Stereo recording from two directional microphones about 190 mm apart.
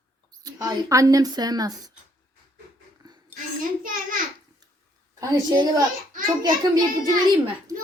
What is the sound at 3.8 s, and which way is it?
Speech, 45° right (ahead or behind).